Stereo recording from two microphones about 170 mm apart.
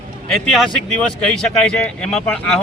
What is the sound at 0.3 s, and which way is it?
Speech, centre (ahead or behind).